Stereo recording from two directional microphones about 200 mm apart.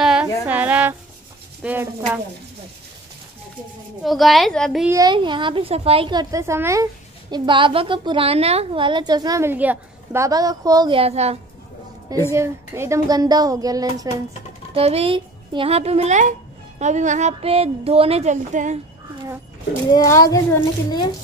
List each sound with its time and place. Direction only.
0.0 s music: 5° right (ahead or behind)
0.5 s a sound: 10° right (ahead or behind)
1.6 s a woman's voice: 10° right (ahead or behind)
4.0 s a woman's voice: centre (ahead or behind)
4.8 s a woman's voice: 20° right (ahead or behind)
12.3 s a woman's voice: 15° right (ahead or behind)
14.7 s a child's voice: 30° right (ahead or behind)
19.9 s a child's voice: 15° left (ahead or behind)